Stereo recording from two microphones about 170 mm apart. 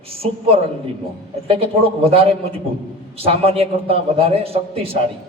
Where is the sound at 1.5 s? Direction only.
35° right (ahead or behind).